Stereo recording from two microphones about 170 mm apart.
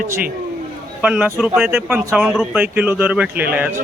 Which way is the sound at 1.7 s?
15° right (ahead or behind).